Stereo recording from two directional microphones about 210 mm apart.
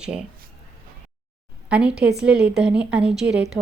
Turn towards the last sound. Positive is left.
turn(degrees=-55)  # may be behind; listen again after turning